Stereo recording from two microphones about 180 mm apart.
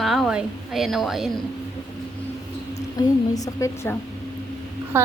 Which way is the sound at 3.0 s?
20° left (ahead or behind).